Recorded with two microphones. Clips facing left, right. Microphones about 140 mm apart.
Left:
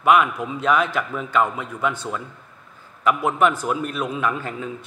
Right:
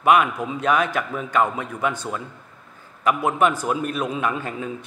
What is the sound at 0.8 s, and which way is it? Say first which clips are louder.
A man's voice: even; 15° right (ahead or behind).